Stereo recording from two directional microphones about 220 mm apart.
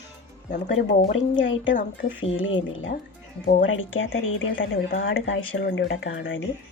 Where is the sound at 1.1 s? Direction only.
60° left (ahead or behind).